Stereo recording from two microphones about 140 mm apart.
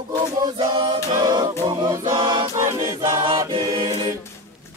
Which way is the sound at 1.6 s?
30° right (ahead or behind).